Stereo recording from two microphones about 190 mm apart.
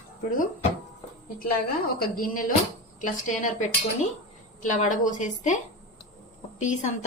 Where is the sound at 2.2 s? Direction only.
45° left (ahead or behind).